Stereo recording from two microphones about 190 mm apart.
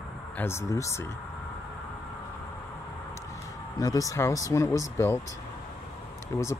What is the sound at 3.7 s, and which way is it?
Speech, 20° left (ahead or behind).